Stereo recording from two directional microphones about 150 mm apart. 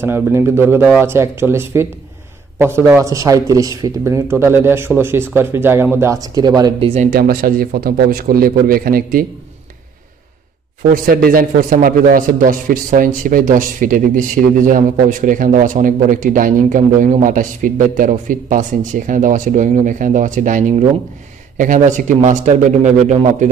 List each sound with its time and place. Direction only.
0.0 s speech: 15° right (ahead or behind)
6.8 s speech: 45° right (ahead or behind)
7.1 s speech: 75° right (ahead or behind)
10.9 s speech: 80° right; by 23.5 s 50° right (ahead or behind)